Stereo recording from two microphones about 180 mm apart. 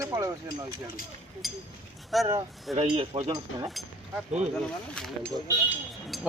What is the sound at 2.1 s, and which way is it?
Speech, centre (ahead or behind).